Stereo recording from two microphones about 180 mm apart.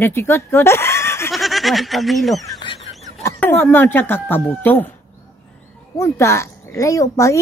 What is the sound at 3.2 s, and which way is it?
Speech, 10° left (ahead or behind).